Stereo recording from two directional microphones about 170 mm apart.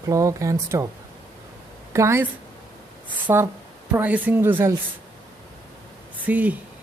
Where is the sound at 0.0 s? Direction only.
20° right (ahead or behind).